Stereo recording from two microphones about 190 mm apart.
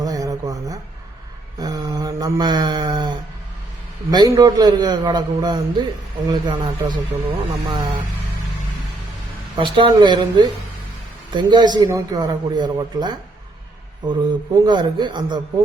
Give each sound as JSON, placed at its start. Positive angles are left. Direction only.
{"t": 0.0, "sound": "a sound", "side_deg": -20}
{"t": 4.1, "sound": "a man's voice", "side_deg": -20}
{"t": 9.6, "sound": "a man's voice", "side_deg": -25}